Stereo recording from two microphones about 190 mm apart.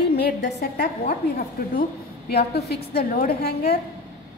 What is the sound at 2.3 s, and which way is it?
A woman's voice, 60° left (ahead or behind).